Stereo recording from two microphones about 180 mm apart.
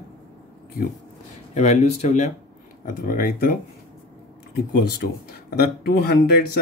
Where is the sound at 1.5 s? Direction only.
40° left (ahead or behind).